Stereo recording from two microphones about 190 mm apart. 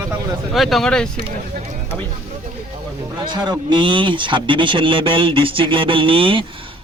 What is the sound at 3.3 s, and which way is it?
Speech, 20° right (ahead or behind).